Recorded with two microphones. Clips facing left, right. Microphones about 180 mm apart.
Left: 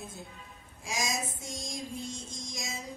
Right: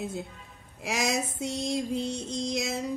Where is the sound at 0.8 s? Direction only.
65° right (ahead or behind).